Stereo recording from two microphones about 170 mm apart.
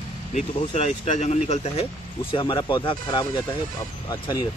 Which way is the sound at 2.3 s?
30° left (ahead or behind).